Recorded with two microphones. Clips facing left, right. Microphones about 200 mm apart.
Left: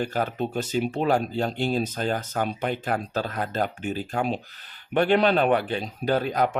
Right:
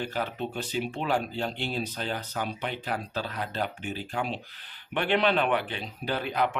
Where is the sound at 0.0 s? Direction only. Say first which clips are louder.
Left 5 dB; 45° left (ahead or behind).